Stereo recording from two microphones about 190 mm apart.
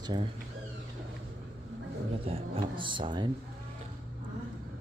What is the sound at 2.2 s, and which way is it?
Speech, 30° right (ahead or behind).